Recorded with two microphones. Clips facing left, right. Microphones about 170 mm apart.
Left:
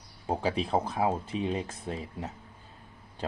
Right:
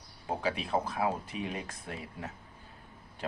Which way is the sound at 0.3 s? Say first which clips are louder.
Left 4 dB; 30° left (ahead or behind).